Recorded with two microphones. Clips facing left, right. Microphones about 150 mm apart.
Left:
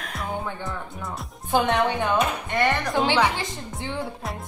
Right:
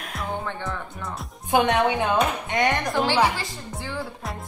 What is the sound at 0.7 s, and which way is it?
Speech, centre (ahead or behind).